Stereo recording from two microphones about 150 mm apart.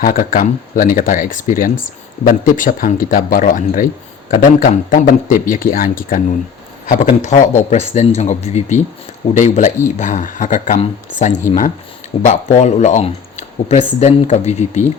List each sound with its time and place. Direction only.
0.0 s a man's voice: 70° left (ahead or behind)
6.8 s speech: 55° left (ahead or behind)